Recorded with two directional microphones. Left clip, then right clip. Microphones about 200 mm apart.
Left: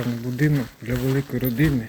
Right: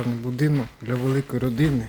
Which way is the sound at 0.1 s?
20° right (ahead or behind).